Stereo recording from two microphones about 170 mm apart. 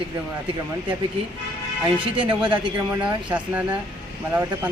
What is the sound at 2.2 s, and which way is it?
Speech, 30° right (ahead or behind).